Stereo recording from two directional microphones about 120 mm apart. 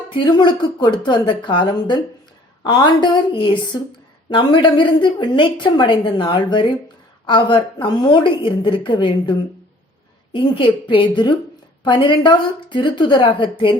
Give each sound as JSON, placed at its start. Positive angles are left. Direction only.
{"t": 0.1, "sound": "a woman's voice", "side_deg": 40}
{"t": 10.3, "sound": "a woman's voice", "side_deg": 45}